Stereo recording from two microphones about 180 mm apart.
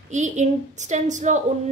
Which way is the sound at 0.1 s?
40° right (ahead or behind).